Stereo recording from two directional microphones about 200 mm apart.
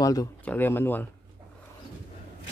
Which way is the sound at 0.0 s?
20° left (ahead or behind).